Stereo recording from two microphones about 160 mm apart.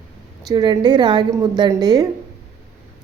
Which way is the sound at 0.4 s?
25° right (ahead or behind).